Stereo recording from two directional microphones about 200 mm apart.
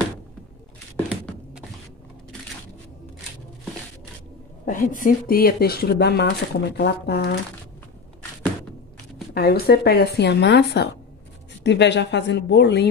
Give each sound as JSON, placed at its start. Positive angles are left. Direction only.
{"t": 4.6, "sound": "speech", "side_deg": 40}
{"t": 9.3, "sound": "a woman's voice", "side_deg": 55}